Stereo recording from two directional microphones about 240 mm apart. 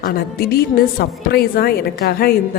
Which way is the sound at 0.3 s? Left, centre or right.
Left.